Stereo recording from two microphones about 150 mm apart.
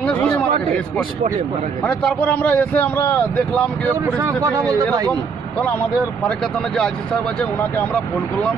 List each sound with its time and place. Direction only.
0.0 s a sound: 10° left (ahead or behind)
0.7 s a man's voice: 5° left (ahead or behind)
3.9 s speech: 20° right (ahead or behind)
6.2 s a man's voice: 5° left (ahead or behind)